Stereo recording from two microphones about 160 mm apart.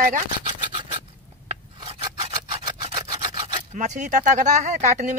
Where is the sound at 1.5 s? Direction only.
40° right (ahead or behind).